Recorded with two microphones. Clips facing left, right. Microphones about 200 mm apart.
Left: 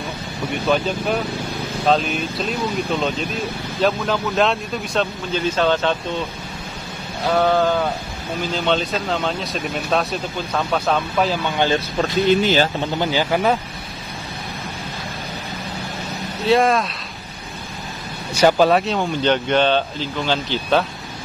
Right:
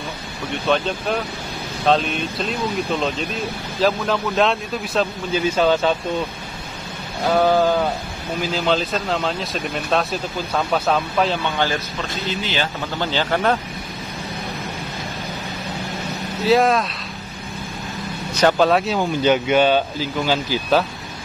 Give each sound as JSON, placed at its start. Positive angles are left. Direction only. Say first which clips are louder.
{"t": 0.7, "sound": "speech", "louder": "left 1 dB", "side_deg": 5}
{"t": 7.3, "sound": "speech", "louder": "right 1 dB", "side_deg": -5}
{"t": 11.5, "sound": "speech", "louder": "left 3 dB", "side_deg": 20}
{"t": 12.0, "sound": "speech", "louder": "left 10 dB", "side_deg": 50}
{"t": 12.9, "sound": "speech", "louder": "right 1 dB", "side_deg": 15}
{"t": 16.4, "sound": "speech", "louder": "even", "side_deg": 0}
{"t": 18.4, "sound": "speech", "louder": "left 1 dB", "side_deg": 5}